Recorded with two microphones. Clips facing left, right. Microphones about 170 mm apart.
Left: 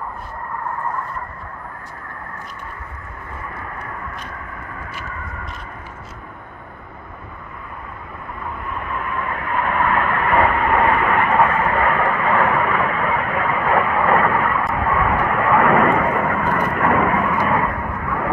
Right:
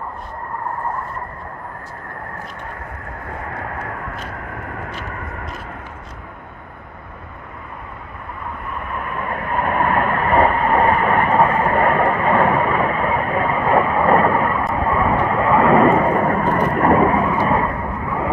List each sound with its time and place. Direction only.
3.5 s vehicle: 90° right
9.3 s vehicle: 40° right (ahead or behind); by 18.3 s 25° right (ahead or behind)